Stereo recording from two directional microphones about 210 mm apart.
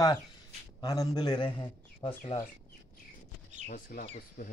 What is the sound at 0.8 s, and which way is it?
A man's voice, 15° left (ahead or behind).